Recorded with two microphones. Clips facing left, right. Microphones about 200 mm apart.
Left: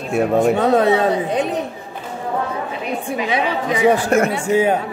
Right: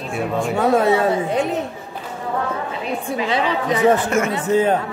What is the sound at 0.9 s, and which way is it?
Speech, 20° left (ahead or behind).